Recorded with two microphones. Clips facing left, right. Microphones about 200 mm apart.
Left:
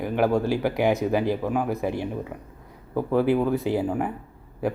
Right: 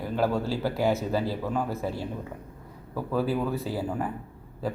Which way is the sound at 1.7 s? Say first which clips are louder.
Left 5 dB; 15° left (ahead or behind).